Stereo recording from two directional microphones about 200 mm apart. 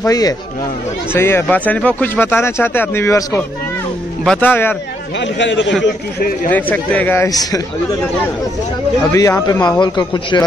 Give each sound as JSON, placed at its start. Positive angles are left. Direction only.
{"t": 0.0, "sound": "speech", "side_deg": 15}
{"t": 5.2, "sound": "a man's voice", "side_deg": 65}
{"t": 6.5, "sound": "speech", "side_deg": 10}
{"t": 9.1, "sound": "a man's voice", "side_deg": 15}